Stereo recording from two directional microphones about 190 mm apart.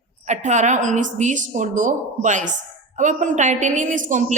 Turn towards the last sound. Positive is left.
turn(degrees=-40)  # may be behind; listen again after turning